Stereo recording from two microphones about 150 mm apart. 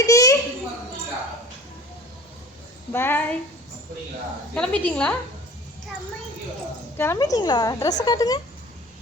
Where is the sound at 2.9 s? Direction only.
15° left (ahead or behind).